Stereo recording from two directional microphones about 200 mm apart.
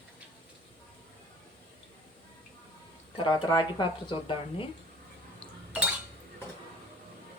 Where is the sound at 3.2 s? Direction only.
20° left (ahead or behind).